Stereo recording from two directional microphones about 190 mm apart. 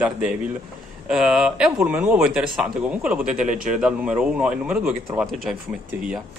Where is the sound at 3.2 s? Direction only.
40° right (ahead or behind).